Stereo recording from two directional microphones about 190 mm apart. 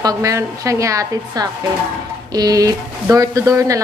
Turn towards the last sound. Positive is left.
turn(degrees=-15)  # may be behind; listen again after turning